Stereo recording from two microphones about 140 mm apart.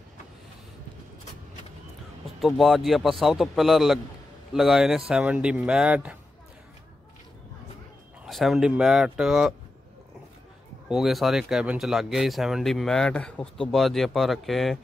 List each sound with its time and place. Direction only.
2.4 s speech: centre (ahead or behind)
8.3 s speech: centre (ahead or behind)
10.9 s speech: centre (ahead or behind)